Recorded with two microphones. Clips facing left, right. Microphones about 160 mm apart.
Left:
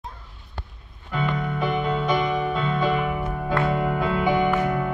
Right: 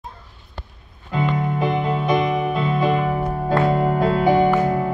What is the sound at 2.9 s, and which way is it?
Music, 35° right (ahead or behind).